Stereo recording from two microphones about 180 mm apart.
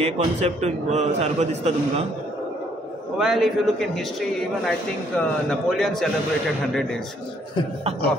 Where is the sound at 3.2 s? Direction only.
Centre (ahead or behind).